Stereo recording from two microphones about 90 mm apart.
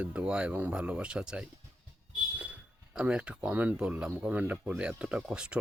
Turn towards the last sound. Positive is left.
turn(degrees=-10)  # may be behind; listen again after turning